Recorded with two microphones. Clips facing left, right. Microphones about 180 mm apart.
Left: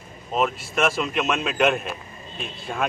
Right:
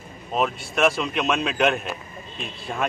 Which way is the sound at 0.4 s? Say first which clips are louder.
Right 1 dB; centre (ahead or behind).